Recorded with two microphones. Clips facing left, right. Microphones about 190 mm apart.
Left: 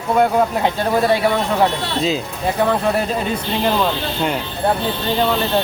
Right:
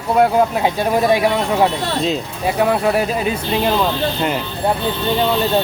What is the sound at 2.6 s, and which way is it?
Speech, 10° right (ahead or behind).